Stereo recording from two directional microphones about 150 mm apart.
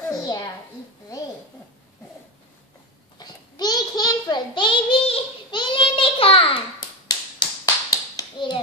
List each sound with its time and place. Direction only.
0.1 s a sound: 25° left (ahead or behind)
3.2 s child singing: 30° left (ahead or behind)
7.1 s clapping: 25° left (ahead or behind)